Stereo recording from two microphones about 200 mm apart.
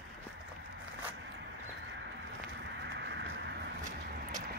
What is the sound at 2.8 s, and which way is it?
Clip-clop, 60° right (ahead or behind).